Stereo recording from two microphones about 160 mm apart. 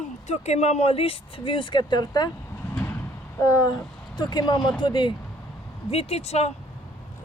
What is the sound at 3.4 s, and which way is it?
Speech, 20° left (ahead or behind).